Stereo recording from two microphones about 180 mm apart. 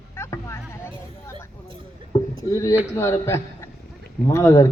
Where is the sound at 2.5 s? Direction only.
20° left (ahead or behind).